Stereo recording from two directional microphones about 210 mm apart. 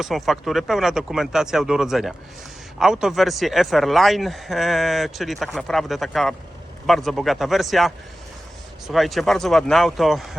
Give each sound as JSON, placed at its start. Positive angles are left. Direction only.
{"t": 0.0, "sound": "a man's voice", "side_deg": 0}